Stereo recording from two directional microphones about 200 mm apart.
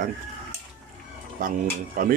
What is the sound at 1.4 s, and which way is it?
Speech, 45° right (ahead or behind).